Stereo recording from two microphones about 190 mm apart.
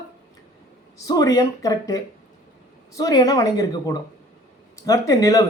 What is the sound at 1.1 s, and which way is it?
A woman's voice, 20° left (ahead or behind).